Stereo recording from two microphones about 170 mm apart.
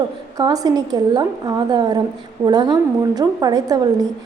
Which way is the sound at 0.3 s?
20° right (ahead or behind).